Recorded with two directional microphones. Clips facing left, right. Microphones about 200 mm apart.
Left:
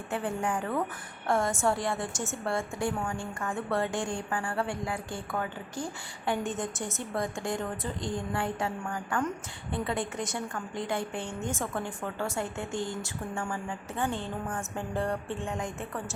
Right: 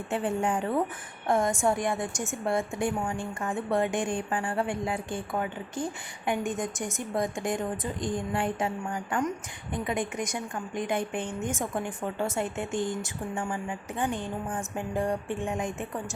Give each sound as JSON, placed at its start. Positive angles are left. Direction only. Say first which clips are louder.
{"t": 0.1, "sound": "a woman's voice", "louder": "right 3 dB", "side_deg": -25}